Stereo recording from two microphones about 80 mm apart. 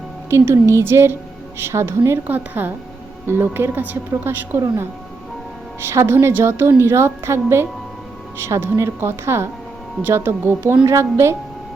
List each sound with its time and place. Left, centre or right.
0.3 s a woman's voice: right
5.8 s a woman's voice: right